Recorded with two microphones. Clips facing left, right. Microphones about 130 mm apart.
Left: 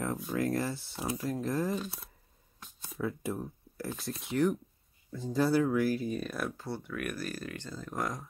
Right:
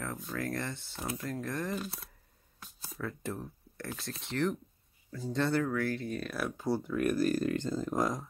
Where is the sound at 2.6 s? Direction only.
5° right (ahead or behind).